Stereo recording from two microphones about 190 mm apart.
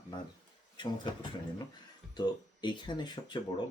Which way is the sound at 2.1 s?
25° left (ahead or behind).